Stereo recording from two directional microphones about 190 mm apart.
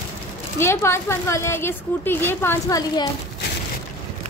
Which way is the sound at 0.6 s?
15° left (ahead or behind).